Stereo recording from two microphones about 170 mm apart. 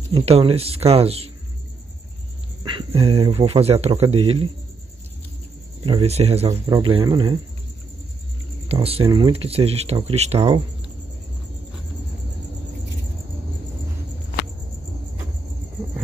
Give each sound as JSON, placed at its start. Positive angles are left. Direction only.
{"t": 0.1, "sound": "speech", "side_deg": -35}
{"t": 2.6, "sound": "speech", "side_deg": -30}
{"t": 5.9, "sound": "speech", "side_deg": -35}
{"t": 6.6, "sound": "speech", "side_deg": -25}
{"t": 8.6, "sound": "speech", "side_deg": -35}